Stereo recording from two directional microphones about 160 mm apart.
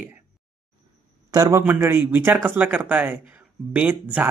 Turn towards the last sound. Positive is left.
turn(degrees=-10)  # may be behind; listen again after turning